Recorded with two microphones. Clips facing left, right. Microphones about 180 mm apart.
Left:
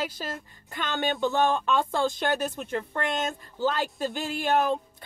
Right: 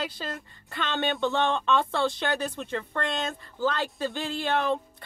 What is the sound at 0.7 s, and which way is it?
Speech, 20° left (ahead or behind).